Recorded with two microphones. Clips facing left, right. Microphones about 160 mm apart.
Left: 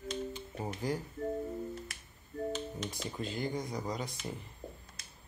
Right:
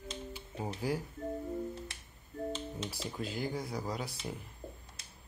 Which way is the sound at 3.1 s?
5° right (ahead or behind).